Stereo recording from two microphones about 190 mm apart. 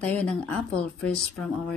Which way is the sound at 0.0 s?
5° left (ahead or behind).